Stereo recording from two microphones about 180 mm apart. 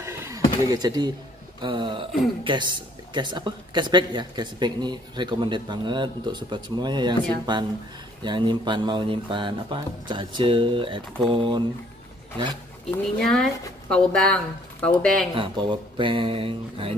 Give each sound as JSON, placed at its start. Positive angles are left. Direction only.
{"t": 0.0, "sound": "a sound", "side_deg": -15}
{"t": 1.6, "sound": "speech", "side_deg": -25}
{"t": 12.4, "sound": "speech", "side_deg": 5}
{"t": 15.3, "sound": "speech", "side_deg": -25}